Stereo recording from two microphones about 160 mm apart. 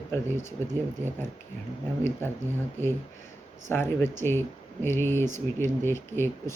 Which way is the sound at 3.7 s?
15° left (ahead or behind).